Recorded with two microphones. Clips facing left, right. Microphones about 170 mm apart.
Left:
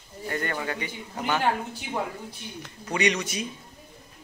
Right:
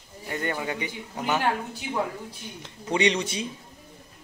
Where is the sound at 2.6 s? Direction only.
25° right (ahead or behind).